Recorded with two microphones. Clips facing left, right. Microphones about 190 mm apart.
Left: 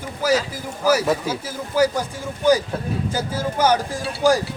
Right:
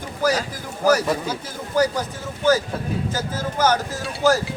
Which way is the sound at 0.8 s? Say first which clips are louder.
Even; 10° left (ahead or behind).